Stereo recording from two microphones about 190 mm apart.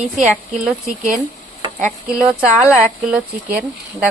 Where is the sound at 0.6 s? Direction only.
5° right (ahead or behind).